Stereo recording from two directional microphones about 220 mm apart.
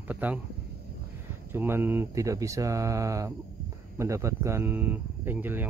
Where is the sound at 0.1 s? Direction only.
5° right (ahead or behind).